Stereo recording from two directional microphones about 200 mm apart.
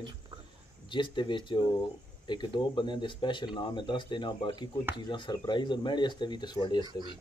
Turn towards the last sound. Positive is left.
turn(degrees=-20)  # may be behind; listen again after turning